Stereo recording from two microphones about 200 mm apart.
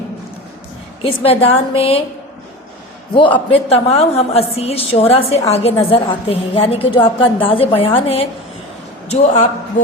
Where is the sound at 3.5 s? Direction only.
30° left (ahead or behind).